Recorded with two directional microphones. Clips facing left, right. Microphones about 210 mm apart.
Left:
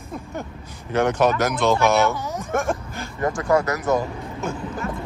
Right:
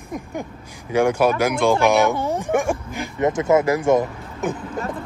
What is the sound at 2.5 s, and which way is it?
Speech, 15° right (ahead or behind).